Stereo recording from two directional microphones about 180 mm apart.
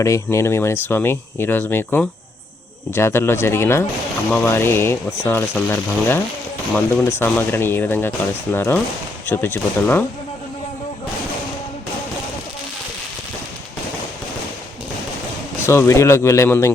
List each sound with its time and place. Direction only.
0.0 s speech: 15° left (ahead or behind)
15.6 s speech: 15° left (ahead or behind)